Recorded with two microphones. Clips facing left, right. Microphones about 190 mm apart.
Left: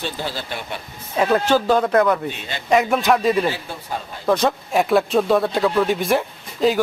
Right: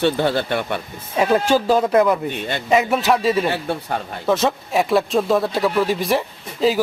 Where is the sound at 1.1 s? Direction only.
10° right (ahead or behind).